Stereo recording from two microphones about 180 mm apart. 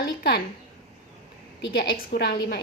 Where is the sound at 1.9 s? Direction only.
55° left (ahead or behind).